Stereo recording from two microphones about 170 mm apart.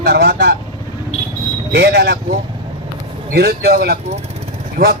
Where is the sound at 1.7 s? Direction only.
75° right (ahead or behind).